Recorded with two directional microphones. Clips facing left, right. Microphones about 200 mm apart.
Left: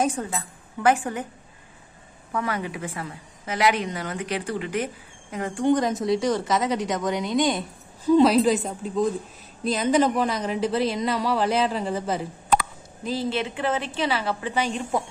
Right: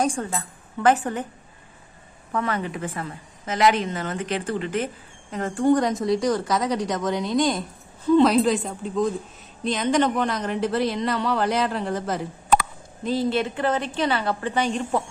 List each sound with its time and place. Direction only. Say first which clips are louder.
0.0 s a woman's voice: right 1 dB; 5° left (ahead or behind)
2.3 s a woman's voice: right 2 dB; 10° left (ahead or behind)
5.5 s a woman's voice: right 2 dB; centre (ahead or behind)